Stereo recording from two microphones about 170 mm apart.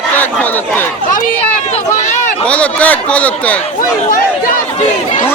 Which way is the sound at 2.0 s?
45° left (ahead or behind).